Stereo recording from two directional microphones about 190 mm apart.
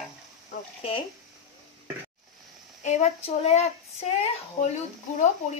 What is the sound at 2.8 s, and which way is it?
Speech, 35° left (ahead or behind).